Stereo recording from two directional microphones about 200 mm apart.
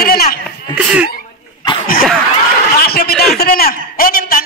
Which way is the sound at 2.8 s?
50° left (ahead or behind).